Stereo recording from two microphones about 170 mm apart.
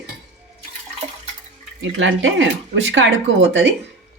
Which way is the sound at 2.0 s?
90° right.